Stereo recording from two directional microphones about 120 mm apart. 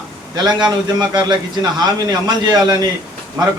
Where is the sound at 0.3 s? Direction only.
35° right (ahead or behind).